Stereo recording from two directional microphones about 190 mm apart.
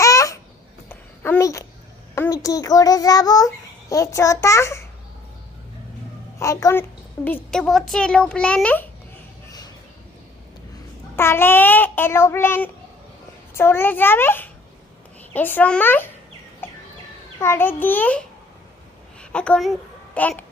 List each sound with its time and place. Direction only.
0.0 s babbling: 15° left (ahead or behind)
2.1 s a child's voice: 15° left (ahead or behind)
6.4 s a child's voice: 15° left (ahead or behind)
7.3 s a child's voice: 5° left (ahead or behind)
11.2 s a child's voice: 10° left (ahead or behind)
16.6 s a sound: 10° left (ahead or behind)
17.4 s a child's voice: 10° left (ahead or behind)